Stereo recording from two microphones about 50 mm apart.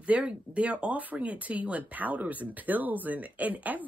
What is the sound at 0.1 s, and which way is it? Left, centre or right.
Speech, right.